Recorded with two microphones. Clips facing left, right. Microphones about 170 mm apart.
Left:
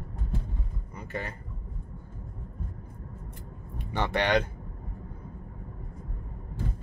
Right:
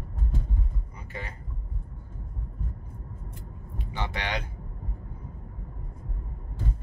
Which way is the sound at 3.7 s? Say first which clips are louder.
Left 6 dB; 55° left (ahead or behind).